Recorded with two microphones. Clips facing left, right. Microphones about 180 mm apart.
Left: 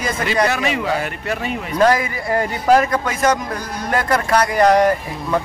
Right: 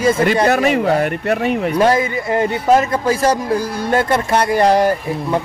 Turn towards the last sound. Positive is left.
turn(degrees=-30)  # may be behind; listen again after turning